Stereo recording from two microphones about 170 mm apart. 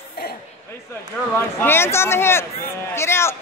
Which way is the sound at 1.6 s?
15° left (ahead or behind).